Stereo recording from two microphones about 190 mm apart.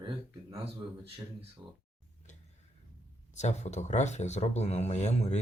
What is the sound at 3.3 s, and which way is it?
Speech, 35° left (ahead or behind).